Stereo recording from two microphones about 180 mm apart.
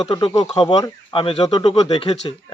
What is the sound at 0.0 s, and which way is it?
Speech, 30° left (ahead or behind).